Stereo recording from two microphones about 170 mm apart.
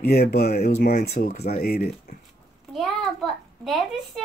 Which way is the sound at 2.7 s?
Centre (ahead or behind).